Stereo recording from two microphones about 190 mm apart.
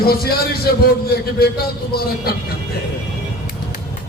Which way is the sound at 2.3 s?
55° left (ahead or behind).